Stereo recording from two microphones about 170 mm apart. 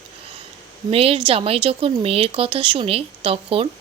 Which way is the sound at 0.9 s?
35° right (ahead or behind).